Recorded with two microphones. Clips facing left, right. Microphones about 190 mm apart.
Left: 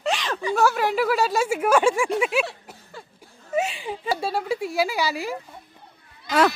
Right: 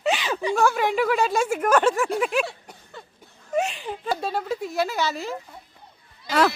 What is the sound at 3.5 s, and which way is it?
Speech, 5° left (ahead or behind).